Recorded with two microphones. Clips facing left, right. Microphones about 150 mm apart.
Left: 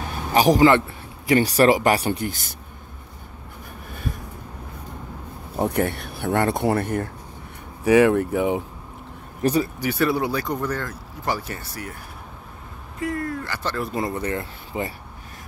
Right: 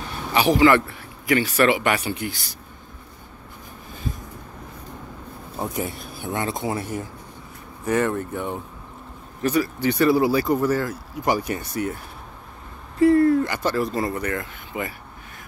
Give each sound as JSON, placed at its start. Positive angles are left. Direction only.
{"t": 0.3, "sound": "speech", "side_deg": 40}
{"t": 0.7, "sound": "a man's voice", "side_deg": 25}
{"t": 5.6, "sound": "speech", "side_deg": 65}
{"t": 7.8, "sound": "speech", "side_deg": 85}
{"t": 9.4, "sound": "speech", "side_deg": 30}
{"t": 9.8, "sound": "speech", "side_deg": 5}
{"t": 13.0, "sound": "speech", "side_deg": -30}
{"t": 13.5, "sound": "speech", "side_deg": -15}
{"t": 13.9, "sound": "speech", "side_deg": 25}